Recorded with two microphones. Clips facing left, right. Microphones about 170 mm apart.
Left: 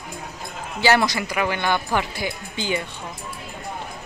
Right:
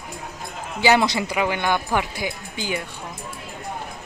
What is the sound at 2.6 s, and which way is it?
Speech, 5° right (ahead or behind).